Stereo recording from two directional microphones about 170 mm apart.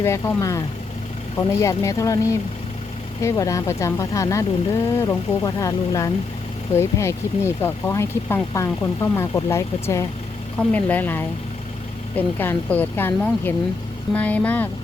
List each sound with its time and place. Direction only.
0.0 s speech: 15° left (ahead or behind)